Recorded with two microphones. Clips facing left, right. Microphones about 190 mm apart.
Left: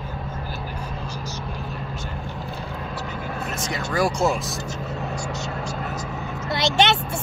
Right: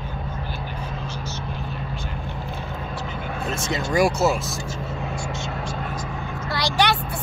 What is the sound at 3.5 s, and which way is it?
Speech, 25° right (ahead or behind).